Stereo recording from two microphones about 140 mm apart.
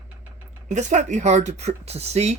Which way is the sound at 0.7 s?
60° right (ahead or behind).